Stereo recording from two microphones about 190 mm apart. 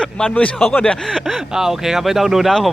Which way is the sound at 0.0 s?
5° left (ahead or behind).